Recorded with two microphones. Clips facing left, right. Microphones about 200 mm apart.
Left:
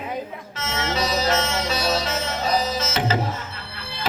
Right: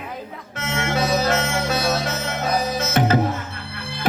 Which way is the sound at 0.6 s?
55° right (ahead or behind).